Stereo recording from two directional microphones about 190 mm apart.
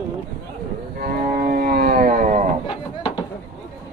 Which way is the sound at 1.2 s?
45° right (ahead or behind).